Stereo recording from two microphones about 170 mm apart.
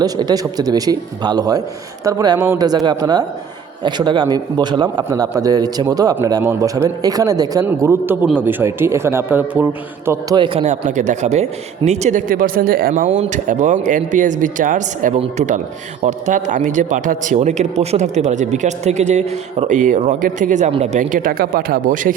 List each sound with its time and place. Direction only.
0.0 s a man's voice: 25° right (ahead or behind)
10.1 s a man's voice: 25° right (ahead or behind)
10.6 s speech: 45° right (ahead or behind)
12.9 s speech: 45° right (ahead or behind)